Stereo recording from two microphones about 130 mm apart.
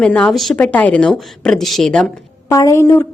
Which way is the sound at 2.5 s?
25° left (ahead or behind).